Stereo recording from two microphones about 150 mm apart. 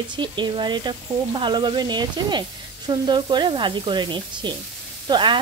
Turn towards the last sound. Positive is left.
turn(degrees=-30)  # may be behind; listen again after turning